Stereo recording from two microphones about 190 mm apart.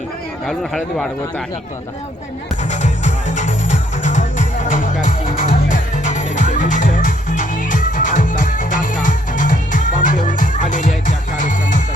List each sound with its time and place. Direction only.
0.4 s speech: centre (ahead or behind)
2.6 s music: 40° left (ahead or behind)